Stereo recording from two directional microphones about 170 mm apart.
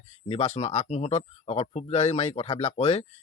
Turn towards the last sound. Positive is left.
turn(degrees=40)  # may be behind; listen again after turning